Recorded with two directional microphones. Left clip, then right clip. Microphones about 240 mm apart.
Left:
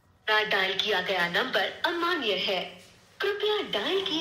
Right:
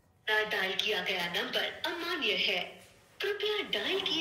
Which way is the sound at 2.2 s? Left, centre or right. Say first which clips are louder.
Left 2 dB; centre.